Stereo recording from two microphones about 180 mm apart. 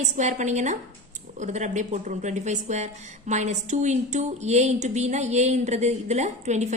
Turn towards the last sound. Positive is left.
turn(degrees=-40)  # may be behind; listen again after turning